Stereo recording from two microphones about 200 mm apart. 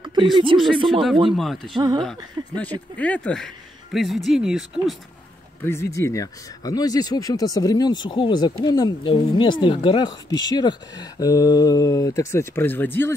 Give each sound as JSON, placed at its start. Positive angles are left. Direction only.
{"t": 0.0, "sound": "a sound", "side_deg": -20}
{"t": 0.5, "sound": "speech", "side_deg": -20}
{"t": 1.3, "sound": "speech", "side_deg": 0}
{"t": 1.8, "sound": "speech", "side_deg": -20}
{"t": 2.0, "sound": "speech", "side_deg": 5}
{"t": 5.6, "sound": "speech", "side_deg": 15}